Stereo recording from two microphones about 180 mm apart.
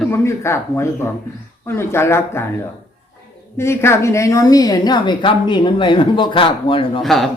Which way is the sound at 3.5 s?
15° left (ahead or behind).